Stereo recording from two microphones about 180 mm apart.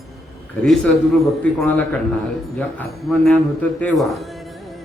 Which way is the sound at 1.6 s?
5° left (ahead or behind).